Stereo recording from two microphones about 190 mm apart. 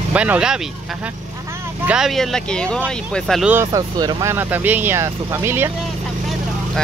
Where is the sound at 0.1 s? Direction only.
5° right (ahead or behind).